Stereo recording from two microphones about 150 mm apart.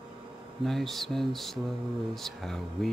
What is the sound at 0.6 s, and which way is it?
Speech, centre (ahead or behind).